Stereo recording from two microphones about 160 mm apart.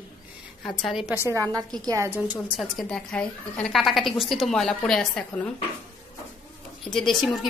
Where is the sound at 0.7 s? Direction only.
Centre (ahead or behind).